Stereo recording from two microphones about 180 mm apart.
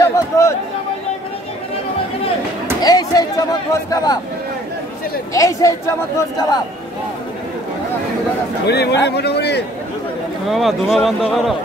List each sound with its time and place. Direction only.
0.0 s chatter: 15° left (ahead or behind)
2.8 s speech: 20° left (ahead or behind)
5.3 s speech: 20° left (ahead or behind)
8.6 s a man's voice: 65° left (ahead or behind)
10.5 s speech: centre (ahead or behind)